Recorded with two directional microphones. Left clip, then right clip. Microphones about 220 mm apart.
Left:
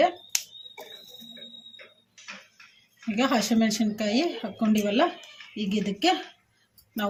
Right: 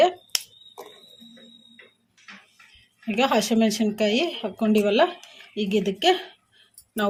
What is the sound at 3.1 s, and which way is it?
A woman's voice, 35° right (ahead or behind).